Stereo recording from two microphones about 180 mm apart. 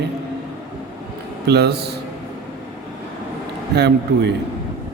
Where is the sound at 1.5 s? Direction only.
65° right (ahead or behind).